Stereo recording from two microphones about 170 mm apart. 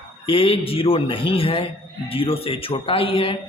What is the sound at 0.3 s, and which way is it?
Speech, 35° left (ahead or behind).